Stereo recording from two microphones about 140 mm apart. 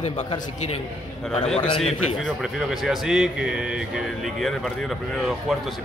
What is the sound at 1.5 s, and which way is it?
Speech, 45° left (ahead or behind).